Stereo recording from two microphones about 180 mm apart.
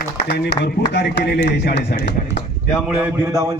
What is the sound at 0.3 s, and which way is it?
Speech, 70° left (ahead or behind).